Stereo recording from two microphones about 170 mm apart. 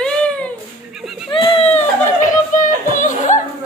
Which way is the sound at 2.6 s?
50° left (ahead or behind).